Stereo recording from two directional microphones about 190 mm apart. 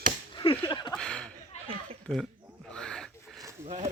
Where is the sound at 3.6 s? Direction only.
40° right (ahead or behind).